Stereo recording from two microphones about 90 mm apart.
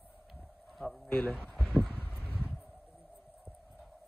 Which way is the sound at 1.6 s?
15° left (ahead or behind).